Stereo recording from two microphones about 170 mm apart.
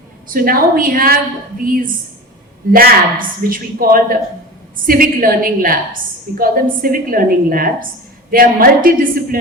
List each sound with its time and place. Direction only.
0.3 s a woman's voice: 60° right (ahead or behind)